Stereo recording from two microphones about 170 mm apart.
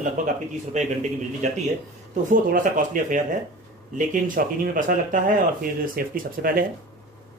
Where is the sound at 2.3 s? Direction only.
50° right (ahead or behind).